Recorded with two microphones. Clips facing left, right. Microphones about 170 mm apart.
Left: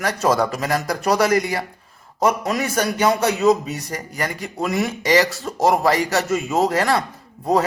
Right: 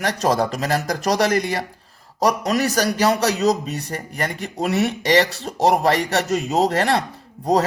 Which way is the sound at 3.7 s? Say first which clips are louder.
Right 1 dB; 65° right (ahead or behind).